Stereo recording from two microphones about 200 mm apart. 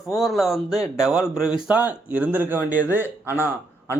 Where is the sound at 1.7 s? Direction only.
5° right (ahead or behind).